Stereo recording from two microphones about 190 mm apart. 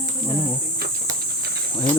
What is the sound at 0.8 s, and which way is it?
Cricket, 55° right (ahead or behind).